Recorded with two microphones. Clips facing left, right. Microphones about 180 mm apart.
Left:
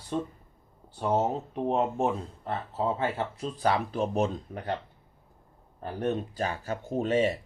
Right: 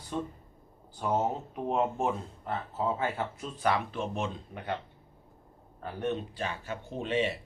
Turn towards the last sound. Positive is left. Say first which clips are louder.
# left 5 dB
turn(degrees=40)  # may be behind; listen again after turning